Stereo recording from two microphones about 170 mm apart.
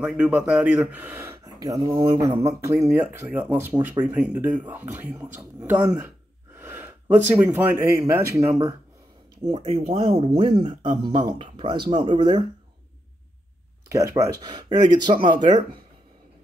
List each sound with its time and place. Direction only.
0.0 s speech: 5° right (ahead or behind)
9.5 s speech: 35° right (ahead or behind)
13.9 s speech: 20° right (ahead or behind)